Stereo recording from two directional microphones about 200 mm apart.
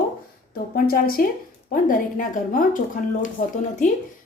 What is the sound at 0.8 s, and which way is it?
A woman's voice, 45° left (ahead or behind).